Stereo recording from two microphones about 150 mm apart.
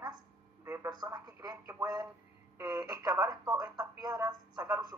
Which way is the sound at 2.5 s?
25° right (ahead or behind).